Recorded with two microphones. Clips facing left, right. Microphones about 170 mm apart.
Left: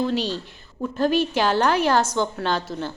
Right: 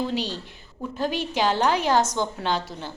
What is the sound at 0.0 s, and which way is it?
A woman's voice, 15° right (ahead or behind).